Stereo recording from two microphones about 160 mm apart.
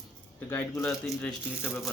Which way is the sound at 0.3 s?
15° left (ahead or behind).